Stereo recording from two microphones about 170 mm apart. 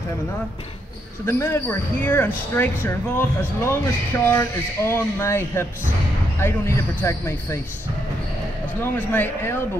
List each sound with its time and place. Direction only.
1.2 s speech: 15° left (ahead or behind)
8.9 s speech: 10° left (ahead or behind)